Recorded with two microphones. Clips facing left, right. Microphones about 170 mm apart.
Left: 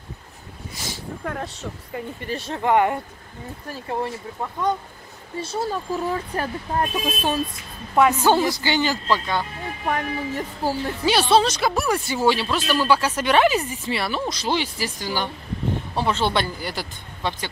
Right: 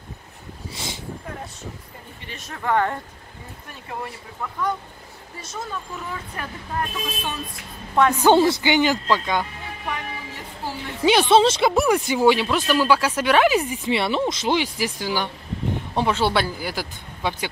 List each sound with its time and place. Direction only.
1.2 s speech: 80° left
2.2 s speech: 30° left (ahead or behind)
2.7 s speech: 15° left (ahead or behind)
3.6 s speech: 30° left (ahead or behind)
8.2 s speech: 25° right (ahead or behind)
9.8 s a woman's voice: 50° left (ahead or behind)
11.1 s speech: 20° right (ahead or behind)